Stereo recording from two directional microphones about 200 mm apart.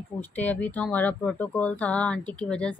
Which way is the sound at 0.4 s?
10° left (ahead or behind).